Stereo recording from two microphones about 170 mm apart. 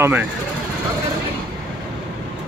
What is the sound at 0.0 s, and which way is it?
Speech, 10° right (ahead or behind).